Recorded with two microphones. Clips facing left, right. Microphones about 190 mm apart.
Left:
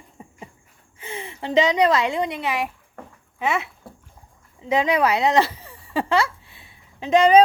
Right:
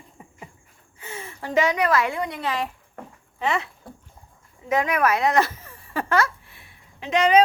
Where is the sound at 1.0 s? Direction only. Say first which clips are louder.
Left 3 dB; 15° left (ahead or behind).